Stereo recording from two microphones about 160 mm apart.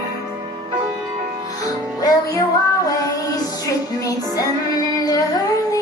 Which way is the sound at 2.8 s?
20° left (ahead or behind).